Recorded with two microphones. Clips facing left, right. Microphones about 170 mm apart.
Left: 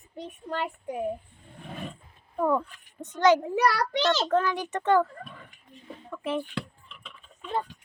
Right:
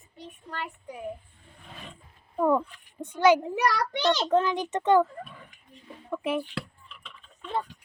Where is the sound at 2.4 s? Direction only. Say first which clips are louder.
Right 2 dB; 10° right (ahead or behind).